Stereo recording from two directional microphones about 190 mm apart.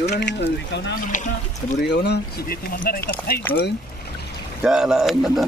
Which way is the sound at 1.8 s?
60° left (ahead or behind).